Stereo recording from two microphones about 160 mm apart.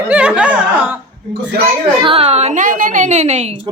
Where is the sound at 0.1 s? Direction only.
10° right (ahead or behind).